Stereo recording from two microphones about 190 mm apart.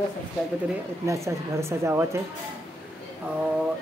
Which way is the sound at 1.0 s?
15° right (ahead or behind).